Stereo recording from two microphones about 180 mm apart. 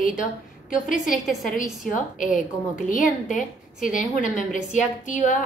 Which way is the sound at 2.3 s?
45° left (ahead or behind).